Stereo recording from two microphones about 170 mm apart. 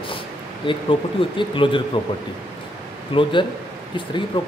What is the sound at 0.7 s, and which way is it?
Mantra, 30° left (ahead or behind).